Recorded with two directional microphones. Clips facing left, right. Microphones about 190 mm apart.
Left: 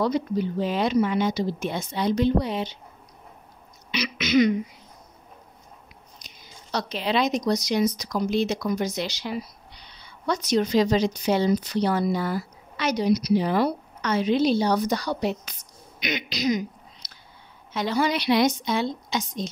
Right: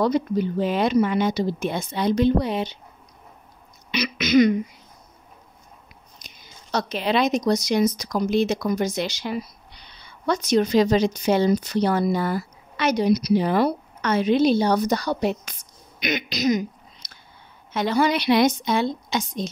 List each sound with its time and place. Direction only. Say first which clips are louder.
0.0 s speech: right 3 dB; 55° right (ahead or behind)
3.9 s speech: right 3 dB; 45° right (ahead or behind)
6.2 s speech: even; 50° right (ahead or behind)
17.0 s a sound: right 1 dB; 50° right (ahead or behind)
17.7 s speech: right 3 dB; 55° right (ahead or behind)